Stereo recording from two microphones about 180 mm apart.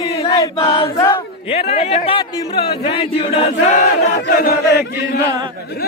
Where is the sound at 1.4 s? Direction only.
35° left (ahead or behind).